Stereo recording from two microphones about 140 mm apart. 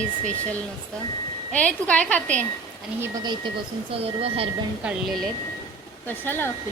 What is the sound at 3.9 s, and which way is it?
Speech, 45° right (ahead or behind).